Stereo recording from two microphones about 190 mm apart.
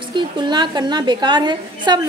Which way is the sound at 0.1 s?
25° right (ahead or behind).